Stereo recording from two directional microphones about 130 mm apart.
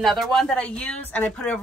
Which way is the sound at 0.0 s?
Centre (ahead or behind).